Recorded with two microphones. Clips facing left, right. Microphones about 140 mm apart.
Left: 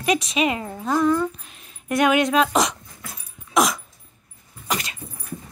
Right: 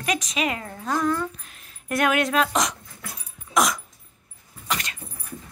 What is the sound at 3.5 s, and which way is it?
Dog, centre (ahead or behind).